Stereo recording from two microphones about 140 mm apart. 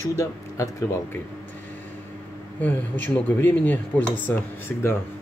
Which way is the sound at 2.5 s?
10° left (ahead or behind).